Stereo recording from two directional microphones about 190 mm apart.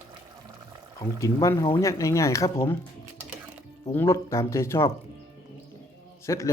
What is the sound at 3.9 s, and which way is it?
Speech, 15° left (ahead or behind).